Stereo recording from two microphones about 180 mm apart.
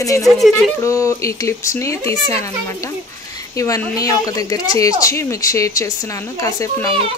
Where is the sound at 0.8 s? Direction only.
15° left (ahead or behind).